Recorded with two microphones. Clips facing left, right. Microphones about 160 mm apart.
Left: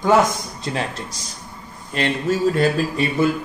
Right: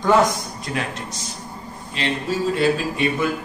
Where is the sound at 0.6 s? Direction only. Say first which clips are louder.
Left 3 dB; 30° left (ahead or behind).